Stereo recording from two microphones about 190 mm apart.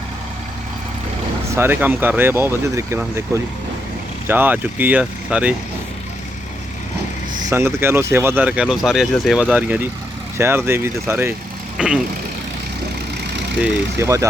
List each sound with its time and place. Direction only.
1.5 s speech: 10° right (ahead or behind)
7.4 s speech: 15° right (ahead or behind)
14.0 s speech: 15° right (ahead or behind)